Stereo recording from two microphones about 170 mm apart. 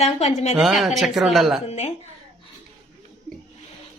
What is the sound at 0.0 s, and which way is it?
Speech, 40° left (ahead or behind).